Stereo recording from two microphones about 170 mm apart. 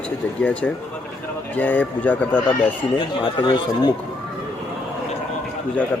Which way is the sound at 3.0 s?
30° left (ahead or behind).